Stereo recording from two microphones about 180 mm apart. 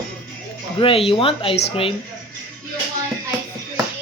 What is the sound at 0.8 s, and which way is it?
Speech, 30° left (ahead or behind).